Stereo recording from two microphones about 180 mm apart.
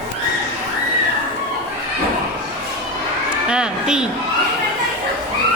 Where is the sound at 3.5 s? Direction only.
5° right (ahead or behind).